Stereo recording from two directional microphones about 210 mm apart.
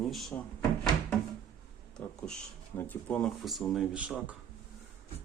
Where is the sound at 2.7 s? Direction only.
10° left (ahead or behind).